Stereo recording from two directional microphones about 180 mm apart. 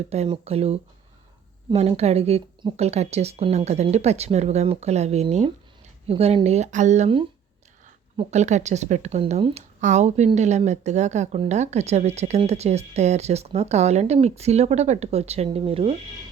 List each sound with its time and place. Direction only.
0.1 s speech: 35° right (ahead or behind)